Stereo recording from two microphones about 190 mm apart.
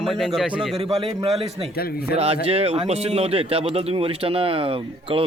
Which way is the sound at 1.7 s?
55° left (ahead or behind).